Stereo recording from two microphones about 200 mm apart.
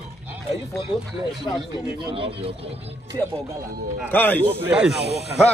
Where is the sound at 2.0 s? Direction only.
25° right (ahead or behind).